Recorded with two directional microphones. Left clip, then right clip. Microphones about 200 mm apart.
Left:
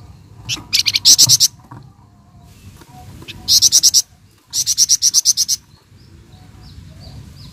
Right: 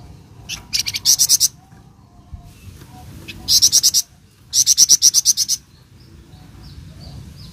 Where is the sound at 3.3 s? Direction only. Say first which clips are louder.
Left 2 dB; 30° left (ahead or behind).